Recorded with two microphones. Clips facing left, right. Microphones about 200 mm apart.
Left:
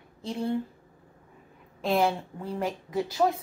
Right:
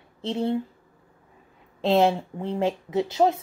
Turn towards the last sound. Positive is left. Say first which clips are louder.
# right 4 dB
turn(degrees=-20)  # may be behind; listen again after turning